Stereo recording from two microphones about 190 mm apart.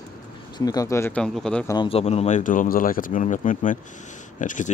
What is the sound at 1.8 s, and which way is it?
Speech, 30° left (ahead or behind).